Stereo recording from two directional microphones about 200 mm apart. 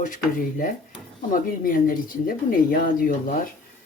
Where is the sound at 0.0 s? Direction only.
40° left (ahead or behind).